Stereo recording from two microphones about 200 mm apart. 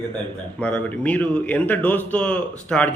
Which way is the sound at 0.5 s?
5° left (ahead or behind).